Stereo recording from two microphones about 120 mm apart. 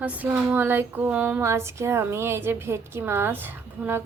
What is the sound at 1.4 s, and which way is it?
A woman's voice, 25° right (ahead or behind).